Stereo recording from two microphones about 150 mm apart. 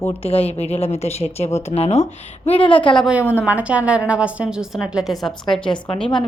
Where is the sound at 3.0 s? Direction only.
5° right (ahead or behind).